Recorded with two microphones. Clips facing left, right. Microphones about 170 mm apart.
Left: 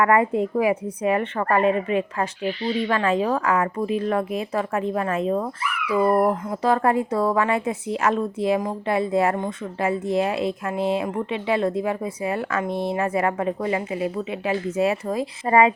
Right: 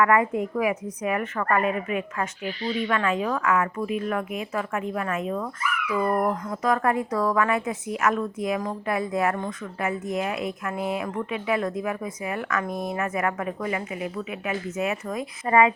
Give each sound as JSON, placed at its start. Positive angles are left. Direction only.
{"t": 0.0, "sound": "a woman's voice", "side_deg": 30}